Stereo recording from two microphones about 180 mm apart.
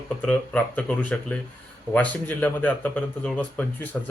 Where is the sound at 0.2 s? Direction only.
5° left (ahead or behind).